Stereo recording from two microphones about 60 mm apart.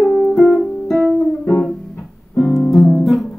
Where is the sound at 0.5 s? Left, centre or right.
Centre.